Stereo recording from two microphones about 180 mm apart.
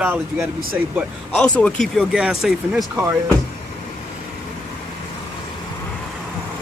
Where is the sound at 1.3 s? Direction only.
5° left (ahead or behind).